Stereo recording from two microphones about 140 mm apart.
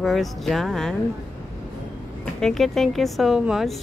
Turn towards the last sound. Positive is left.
turn(degrees=-5)  # may be behind; listen again after turning